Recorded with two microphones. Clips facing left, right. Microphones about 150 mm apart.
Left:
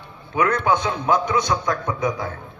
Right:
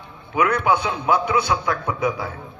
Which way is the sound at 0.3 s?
10° right (ahead or behind).